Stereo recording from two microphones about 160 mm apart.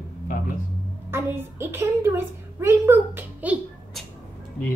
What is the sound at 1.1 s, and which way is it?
A woman's voice, 15° right (ahead or behind).